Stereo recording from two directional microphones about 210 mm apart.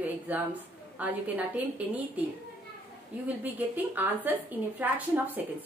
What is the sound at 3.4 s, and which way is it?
Speech, 10° right (ahead or behind).